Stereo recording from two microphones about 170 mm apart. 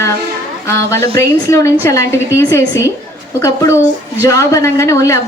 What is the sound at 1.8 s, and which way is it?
A woman's voice, 15° left (ahead or behind).